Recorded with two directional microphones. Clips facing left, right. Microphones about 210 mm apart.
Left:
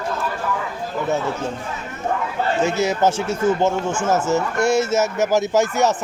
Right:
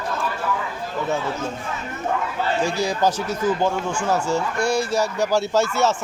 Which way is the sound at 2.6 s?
25° left (ahead or behind).